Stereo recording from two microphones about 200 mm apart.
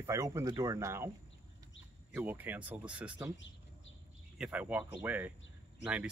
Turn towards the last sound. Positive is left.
turn(degrees=-5)  # may be behind; listen again after turning